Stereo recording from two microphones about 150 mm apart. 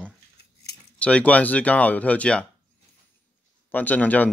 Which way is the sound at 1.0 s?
10° left (ahead or behind).